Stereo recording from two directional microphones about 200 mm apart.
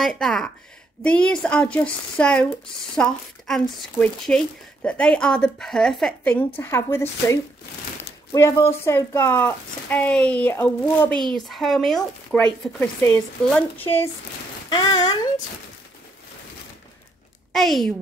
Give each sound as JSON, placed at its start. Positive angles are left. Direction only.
{"t": 0.0, "sound": "a child's voice", "side_deg": 0}
{"t": 14.7, "sound": "speech", "side_deg": 20}
{"t": 17.5, "sound": "a woman's voice", "side_deg": 0}